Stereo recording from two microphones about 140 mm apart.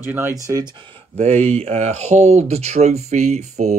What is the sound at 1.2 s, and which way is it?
Speech, 50° right (ahead or behind).